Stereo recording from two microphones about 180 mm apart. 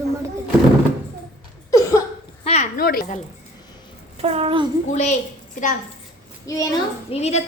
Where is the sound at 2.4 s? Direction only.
35° left (ahead or behind).